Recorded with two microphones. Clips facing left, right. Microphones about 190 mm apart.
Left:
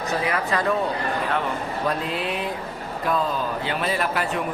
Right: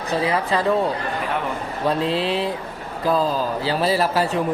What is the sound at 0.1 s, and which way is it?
Speech, 30° right (ahead or behind).